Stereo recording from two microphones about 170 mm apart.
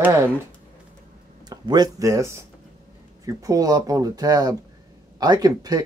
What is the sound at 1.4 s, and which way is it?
Speech, 25° right (ahead or behind).